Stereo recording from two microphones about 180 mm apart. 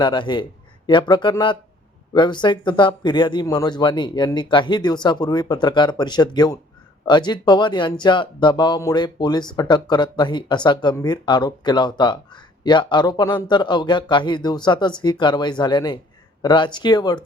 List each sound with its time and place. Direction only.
0.0 s speech: 25° left (ahead or behind)